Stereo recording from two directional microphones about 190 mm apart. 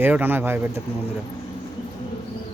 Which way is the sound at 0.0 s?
10° right (ahead or behind).